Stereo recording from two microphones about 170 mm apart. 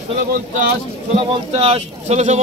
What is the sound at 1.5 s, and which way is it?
Speech, 35° right (ahead or behind).